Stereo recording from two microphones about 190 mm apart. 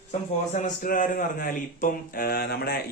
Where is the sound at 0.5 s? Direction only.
40° left (ahead or behind).